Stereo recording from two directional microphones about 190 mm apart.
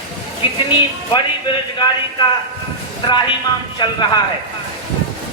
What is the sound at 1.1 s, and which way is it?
A man's voice, 25° left (ahead or behind).